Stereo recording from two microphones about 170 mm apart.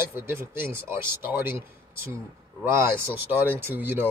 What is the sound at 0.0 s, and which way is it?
Speech, 15° right (ahead or behind).